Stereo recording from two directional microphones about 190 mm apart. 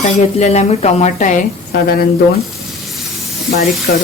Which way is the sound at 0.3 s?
35° left (ahead or behind).